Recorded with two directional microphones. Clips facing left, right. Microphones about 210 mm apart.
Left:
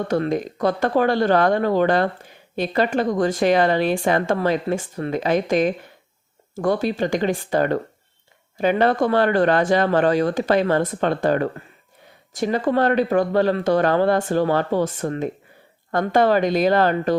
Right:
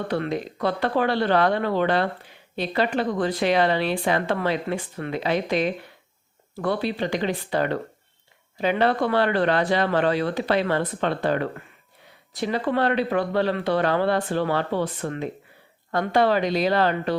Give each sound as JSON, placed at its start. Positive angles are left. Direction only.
{"t": 0.1, "sound": "speech", "side_deg": 45}